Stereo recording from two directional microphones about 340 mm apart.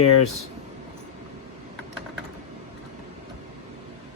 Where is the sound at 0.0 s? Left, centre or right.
Left.